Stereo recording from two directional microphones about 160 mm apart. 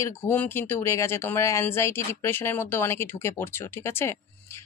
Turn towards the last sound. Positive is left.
turn(degrees=15)  # may be behind; listen again after turning